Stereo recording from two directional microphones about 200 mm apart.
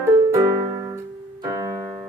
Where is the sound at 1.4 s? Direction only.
15° right (ahead or behind).